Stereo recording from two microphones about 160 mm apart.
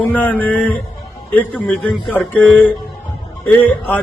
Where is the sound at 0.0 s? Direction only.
10° left (ahead or behind).